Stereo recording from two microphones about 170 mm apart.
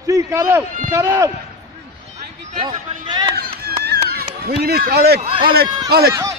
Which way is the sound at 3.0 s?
30° right (ahead or behind).